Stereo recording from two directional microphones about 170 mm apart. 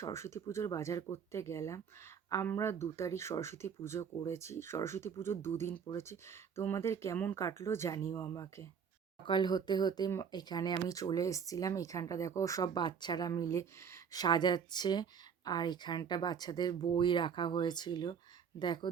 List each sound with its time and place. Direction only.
0.0 s speech: 15° left (ahead or behind)
9.2 s speech: 25° left (ahead or behind)